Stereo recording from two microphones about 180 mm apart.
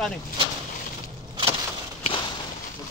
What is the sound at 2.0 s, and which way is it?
Walk, 30° left (ahead or behind).